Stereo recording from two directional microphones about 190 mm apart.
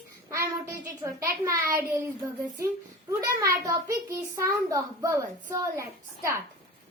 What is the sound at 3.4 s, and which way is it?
A child's voice, 15° right (ahead or behind).